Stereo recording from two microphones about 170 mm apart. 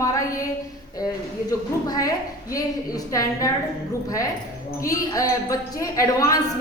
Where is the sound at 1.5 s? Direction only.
20° left (ahead or behind).